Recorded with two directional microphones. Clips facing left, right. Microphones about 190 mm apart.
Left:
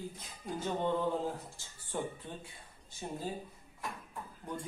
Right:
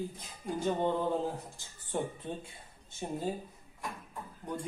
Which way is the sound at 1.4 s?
15° right (ahead or behind).